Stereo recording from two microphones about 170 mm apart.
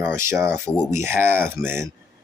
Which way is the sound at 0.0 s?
15° right (ahead or behind).